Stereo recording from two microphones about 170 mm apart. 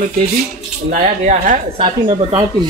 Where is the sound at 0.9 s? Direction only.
50° right (ahead or behind).